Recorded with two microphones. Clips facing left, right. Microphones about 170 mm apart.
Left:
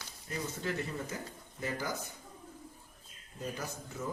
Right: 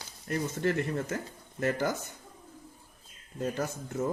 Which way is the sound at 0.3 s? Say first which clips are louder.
Right 8 dB; 65° right (ahead or behind).